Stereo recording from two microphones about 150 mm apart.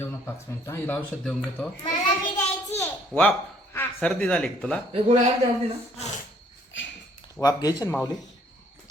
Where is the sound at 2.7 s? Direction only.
10° left (ahead or behind).